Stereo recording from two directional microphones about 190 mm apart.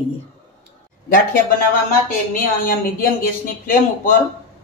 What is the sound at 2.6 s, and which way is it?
Speech, 50° left (ahead or behind).